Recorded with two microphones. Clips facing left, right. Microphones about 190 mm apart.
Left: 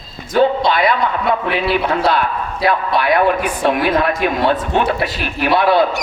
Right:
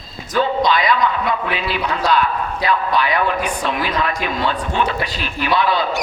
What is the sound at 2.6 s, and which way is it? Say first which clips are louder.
A man's voice: left 3 dB; 55° left (ahead or behind).